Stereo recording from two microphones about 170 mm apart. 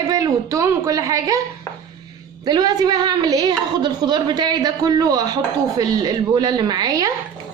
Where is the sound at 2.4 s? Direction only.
25° right (ahead or behind).